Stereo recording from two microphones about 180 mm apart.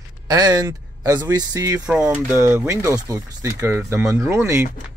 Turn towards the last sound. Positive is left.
turn(degrees=-15)  # may be behind; listen again after turning